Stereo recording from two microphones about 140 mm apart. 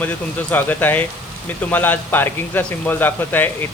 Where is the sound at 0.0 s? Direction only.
10° left (ahead or behind).